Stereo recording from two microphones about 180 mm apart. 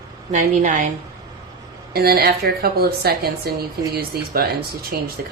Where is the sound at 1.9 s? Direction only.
60° right (ahead or behind).